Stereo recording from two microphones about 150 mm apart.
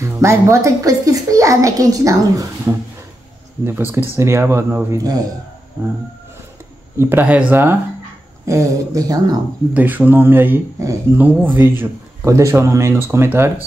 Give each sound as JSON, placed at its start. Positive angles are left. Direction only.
{"t": 0.0, "sound": "a child's voice", "side_deg": -20}
{"t": 3.9, "sound": "speech", "side_deg": -15}
{"t": 7.0, "sound": "a child's voice", "side_deg": -15}
{"t": 9.8, "sound": "speech", "side_deg": -10}